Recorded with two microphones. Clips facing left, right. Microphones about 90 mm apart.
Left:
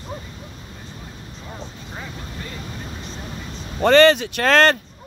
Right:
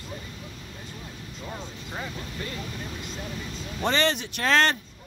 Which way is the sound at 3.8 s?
65° left (ahead or behind).